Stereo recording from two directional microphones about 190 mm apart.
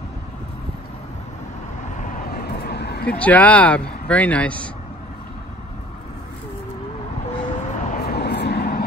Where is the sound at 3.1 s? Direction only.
10° left (ahead or behind).